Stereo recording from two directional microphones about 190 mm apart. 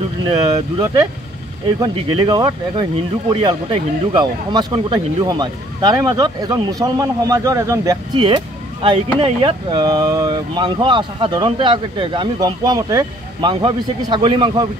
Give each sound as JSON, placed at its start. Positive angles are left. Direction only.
{"t": 1.8, "sound": "speech", "side_deg": -20}